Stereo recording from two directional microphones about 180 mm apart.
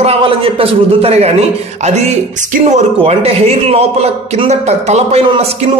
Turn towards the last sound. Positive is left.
turn(degrees=-35)  # may be behind; listen again after turning